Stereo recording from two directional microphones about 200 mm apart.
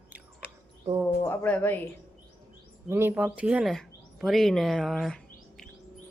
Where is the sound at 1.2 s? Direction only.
10° left (ahead or behind).